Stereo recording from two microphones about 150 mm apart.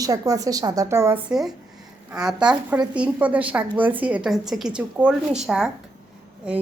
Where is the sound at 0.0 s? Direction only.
25° right (ahead or behind).